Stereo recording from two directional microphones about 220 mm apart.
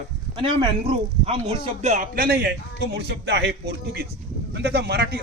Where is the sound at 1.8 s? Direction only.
35° right (ahead or behind).